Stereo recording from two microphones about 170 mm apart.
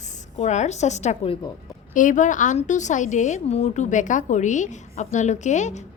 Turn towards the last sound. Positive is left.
turn(degrees=45)  # may be behind; listen again after turning